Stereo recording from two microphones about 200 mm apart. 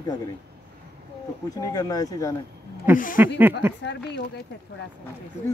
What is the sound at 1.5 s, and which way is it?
Speech, 20° left (ahead or behind).